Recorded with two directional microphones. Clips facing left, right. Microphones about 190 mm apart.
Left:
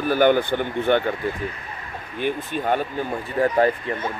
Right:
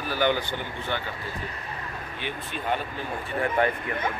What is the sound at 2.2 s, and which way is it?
Speech, 45° left (ahead or behind).